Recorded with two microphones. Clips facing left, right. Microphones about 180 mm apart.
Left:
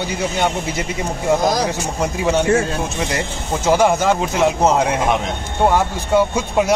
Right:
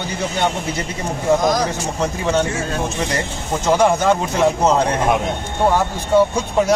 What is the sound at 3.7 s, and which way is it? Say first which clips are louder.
A man's voice: even; 5° left (ahead or behind).